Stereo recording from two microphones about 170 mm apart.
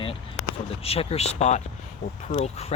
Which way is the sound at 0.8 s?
35° left (ahead or behind).